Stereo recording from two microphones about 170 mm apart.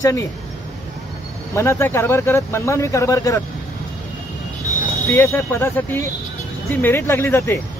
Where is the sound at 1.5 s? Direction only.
15° left (ahead or behind).